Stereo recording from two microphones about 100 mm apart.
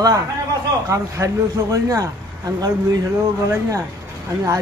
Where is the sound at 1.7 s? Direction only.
35° right (ahead or behind).